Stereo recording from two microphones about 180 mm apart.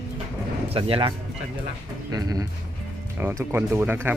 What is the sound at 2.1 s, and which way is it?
Speech, 20° right (ahead or behind).